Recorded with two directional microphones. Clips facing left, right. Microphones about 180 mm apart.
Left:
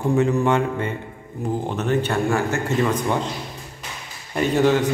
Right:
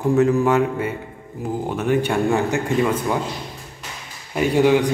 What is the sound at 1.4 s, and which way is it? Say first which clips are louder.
Speech: right 1 dB; 5° right (ahead or behind).